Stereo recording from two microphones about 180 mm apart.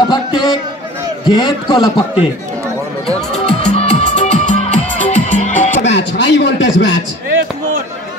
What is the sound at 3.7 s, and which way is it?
Music, 40° left (ahead or behind).